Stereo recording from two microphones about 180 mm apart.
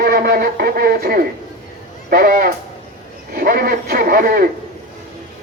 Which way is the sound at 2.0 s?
55° right (ahead or behind).